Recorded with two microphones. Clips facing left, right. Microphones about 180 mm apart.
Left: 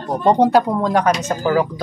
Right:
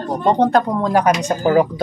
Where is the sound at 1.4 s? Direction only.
25° right (ahead or behind).